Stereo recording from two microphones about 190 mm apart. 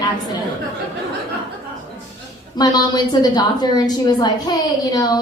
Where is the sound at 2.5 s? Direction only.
20° left (ahead or behind).